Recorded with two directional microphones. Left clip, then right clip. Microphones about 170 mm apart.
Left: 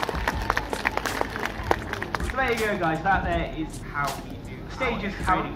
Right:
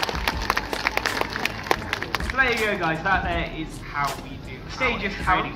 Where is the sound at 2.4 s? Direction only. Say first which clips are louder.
Right 3 dB; centre (ahead or behind).